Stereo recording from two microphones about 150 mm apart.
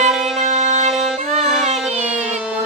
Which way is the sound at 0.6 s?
45° right (ahead or behind).